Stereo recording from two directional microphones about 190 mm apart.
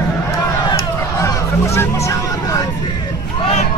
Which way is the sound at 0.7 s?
15° left (ahead or behind).